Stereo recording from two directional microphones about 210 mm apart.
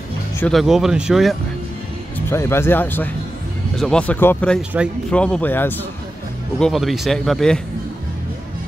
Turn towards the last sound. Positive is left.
turn(degrees=5)  # may be behind; listen again after turning